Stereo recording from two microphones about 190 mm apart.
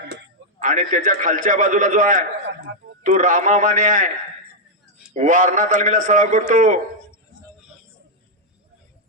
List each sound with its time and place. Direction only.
0.6 s a man's voice: 40° right (ahead or behind)
5.1 s a man's voice: 40° right (ahead or behind)